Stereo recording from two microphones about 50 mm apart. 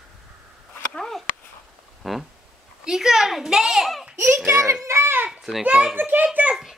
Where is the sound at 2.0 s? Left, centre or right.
Centre.